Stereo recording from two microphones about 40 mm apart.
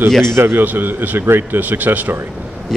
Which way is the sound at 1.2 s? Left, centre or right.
Right.